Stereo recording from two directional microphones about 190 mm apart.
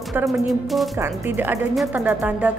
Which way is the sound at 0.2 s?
10° right (ahead or behind).